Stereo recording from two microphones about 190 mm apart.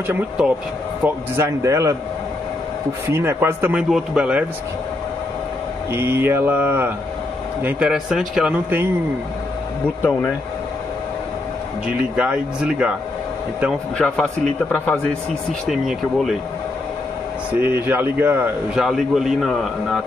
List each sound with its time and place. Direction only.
0.0 s speech: 10° right (ahead or behind)
3.1 s speech: 10° right (ahead or behind)
5.9 s a man's voice: 10° right (ahead or behind)
12.0 s a man's voice: 5° right (ahead or behind)
13.9 s a man's voice: 5° left (ahead or behind)
17.6 s a man's voice: 10° right (ahead or behind)